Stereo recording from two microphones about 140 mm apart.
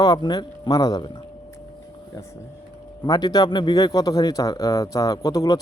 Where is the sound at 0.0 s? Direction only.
30° left (ahead or behind).